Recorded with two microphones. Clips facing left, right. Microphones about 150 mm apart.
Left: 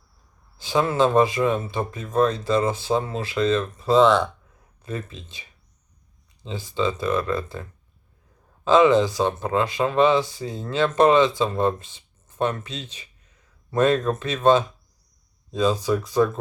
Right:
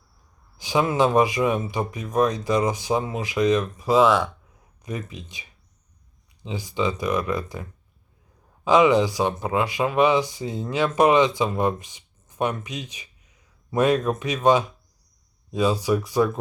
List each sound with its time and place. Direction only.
0.5 s speech: 15° right (ahead or behind)